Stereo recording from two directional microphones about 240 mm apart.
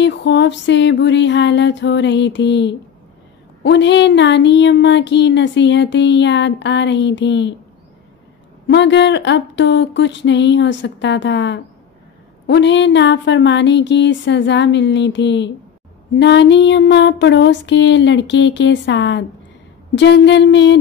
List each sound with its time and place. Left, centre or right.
0.0 s speech: left
8.6 s speech: left